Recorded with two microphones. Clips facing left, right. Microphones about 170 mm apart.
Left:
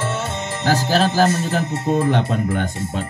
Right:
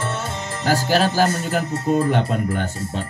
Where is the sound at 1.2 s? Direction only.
20° left (ahead or behind).